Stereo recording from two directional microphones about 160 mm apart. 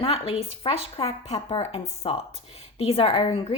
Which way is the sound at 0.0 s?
40° left (ahead or behind).